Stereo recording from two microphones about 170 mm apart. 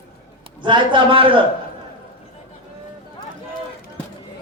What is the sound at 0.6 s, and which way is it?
Speech, 30° right (ahead or behind).